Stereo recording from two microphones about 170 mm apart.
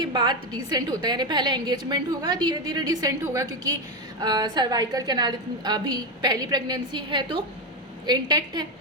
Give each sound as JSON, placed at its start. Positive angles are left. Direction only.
{"t": 0.0, "sound": "a woman's voice", "side_deg": -25}